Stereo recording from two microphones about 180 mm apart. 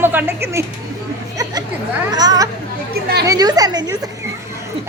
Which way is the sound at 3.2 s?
20° right (ahead or behind).